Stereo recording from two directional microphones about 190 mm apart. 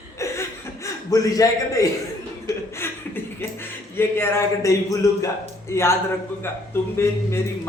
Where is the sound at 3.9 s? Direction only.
15° left (ahead or behind).